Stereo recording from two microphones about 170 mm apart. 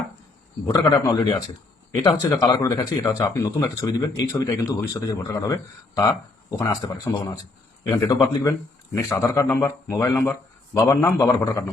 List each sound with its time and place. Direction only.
0.7 s speech: 20° left (ahead or behind)